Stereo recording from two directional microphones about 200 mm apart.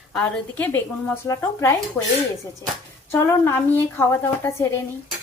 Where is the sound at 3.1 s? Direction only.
10° left (ahead or behind).